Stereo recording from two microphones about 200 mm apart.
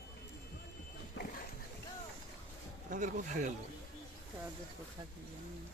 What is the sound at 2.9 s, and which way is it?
Speech, 40° right (ahead or behind).